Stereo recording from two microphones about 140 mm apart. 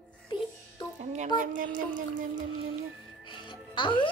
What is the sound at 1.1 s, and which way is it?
Speech, 65° right (ahead or behind).